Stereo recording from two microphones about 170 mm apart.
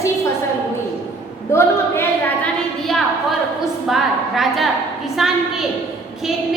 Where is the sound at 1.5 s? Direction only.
15° left (ahead or behind).